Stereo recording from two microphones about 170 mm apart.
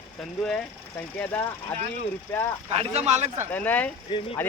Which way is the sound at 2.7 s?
40° right (ahead or behind).